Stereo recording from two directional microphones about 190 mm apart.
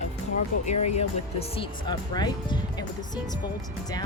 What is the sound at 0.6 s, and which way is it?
Speech, 35° left (ahead or behind).